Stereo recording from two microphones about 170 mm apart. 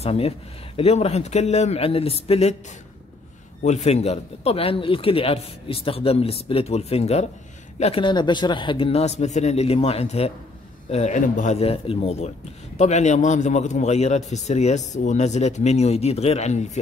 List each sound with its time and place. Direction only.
0.0 s a man's voice: 35° left (ahead or behind)
3.6 s a man's voice: 40° left (ahead or behind)